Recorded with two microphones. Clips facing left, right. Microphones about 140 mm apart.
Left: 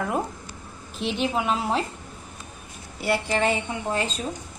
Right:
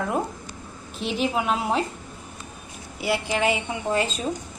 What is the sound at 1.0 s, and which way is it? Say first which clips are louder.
Speech: even; centre (ahead or behind).